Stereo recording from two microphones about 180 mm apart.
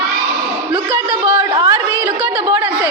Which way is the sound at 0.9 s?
10° right (ahead or behind).